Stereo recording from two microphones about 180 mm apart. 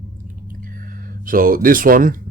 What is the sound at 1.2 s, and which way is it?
Speech, 50° right (ahead or behind).